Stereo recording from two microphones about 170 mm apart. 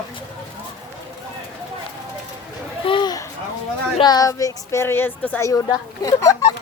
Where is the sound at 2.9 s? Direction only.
25° left (ahead or behind).